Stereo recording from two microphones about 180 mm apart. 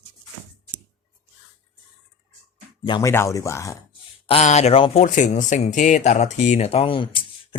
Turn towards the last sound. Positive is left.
turn(degrees=30)  # may be behind; listen again after turning